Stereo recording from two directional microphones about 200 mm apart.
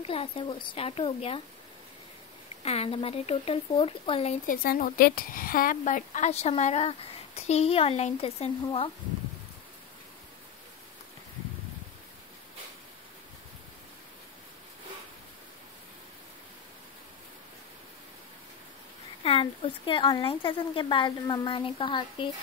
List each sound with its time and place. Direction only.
0.0 s speech: 30° left (ahead or behind)
2.6 s speech: 30° left (ahead or behind)
4.6 s a woman's voice: 45° left (ahead or behind); by 8.9 s 30° left (ahead or behind)
19.2 s speech: 25° left (ahead or behind)